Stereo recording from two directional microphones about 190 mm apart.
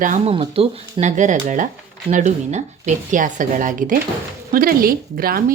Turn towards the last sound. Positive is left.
turn(degrees=-50)  # may be behind; listen again after turning